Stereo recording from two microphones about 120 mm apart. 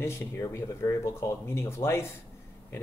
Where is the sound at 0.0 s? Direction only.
20° left (ahead or behind).